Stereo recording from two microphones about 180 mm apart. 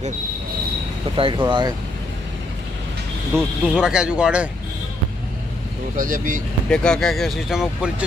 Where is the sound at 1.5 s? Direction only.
25° right (ahead or behind).